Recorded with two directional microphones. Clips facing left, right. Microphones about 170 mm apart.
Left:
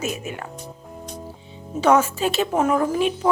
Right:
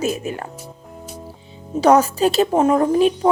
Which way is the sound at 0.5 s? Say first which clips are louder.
Even; 5° right (ahead or behind).